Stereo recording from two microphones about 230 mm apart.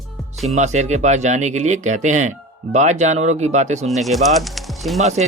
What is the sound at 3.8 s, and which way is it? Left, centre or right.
Speech, centre.